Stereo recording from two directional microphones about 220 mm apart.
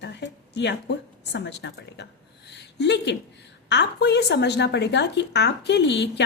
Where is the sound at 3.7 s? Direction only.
50° left (ahead or behind).